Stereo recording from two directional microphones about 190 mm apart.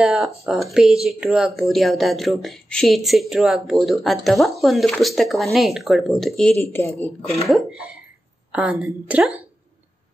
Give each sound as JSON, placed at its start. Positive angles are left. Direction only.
{"t": 0.0, "sound": "speech", "side_deg": 0}
{"t": 6.6, "sound": "speech", "side_deg": 15}
{"t": 8.5, "sound": "speech", "side_deg": -5}